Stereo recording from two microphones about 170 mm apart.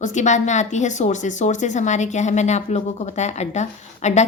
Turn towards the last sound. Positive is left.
turn(degrees=45)  # may be behind; listen again after turning